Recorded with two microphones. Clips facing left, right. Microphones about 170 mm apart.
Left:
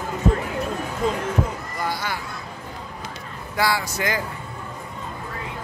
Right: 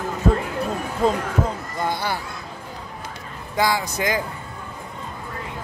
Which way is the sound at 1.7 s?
25° right (ahead or behind).